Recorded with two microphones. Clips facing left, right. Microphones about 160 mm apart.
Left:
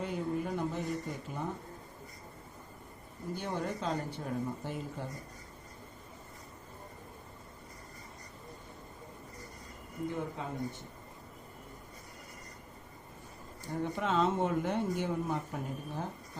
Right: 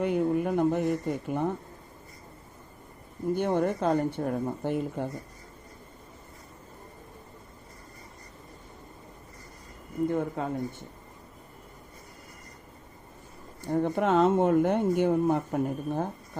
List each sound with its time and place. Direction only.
0.0 s speech: 60° right (ahead or behind)
3.3 s speech: 55° right (ahead or behind)
10.1 s speech: 55° right (ahead or behind)
13.7 s speech: 55° right (ahead or behind)